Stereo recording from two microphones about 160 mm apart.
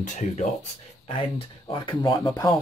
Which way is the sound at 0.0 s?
50° left (ahead or behind).